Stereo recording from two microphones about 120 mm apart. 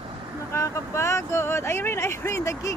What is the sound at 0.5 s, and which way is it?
Speech, 25° left (ahead or behind).